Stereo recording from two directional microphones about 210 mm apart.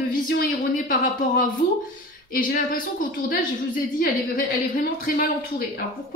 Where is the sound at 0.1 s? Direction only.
45° left (ahead or behind).